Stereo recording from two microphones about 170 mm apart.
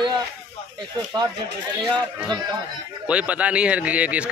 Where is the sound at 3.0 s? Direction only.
5° right (ahead or behind).